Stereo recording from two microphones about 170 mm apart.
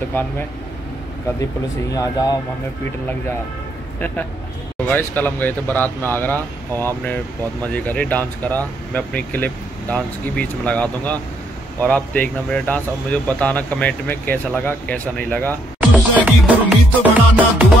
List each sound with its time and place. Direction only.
1.4 s speech: 20° left (ahead or behind)
4.8 s speech: 10° left (ahead or behind)
7.7 s speech: 10° left (ahead or behind)
15.8 s music: 10° right (ahead or behind)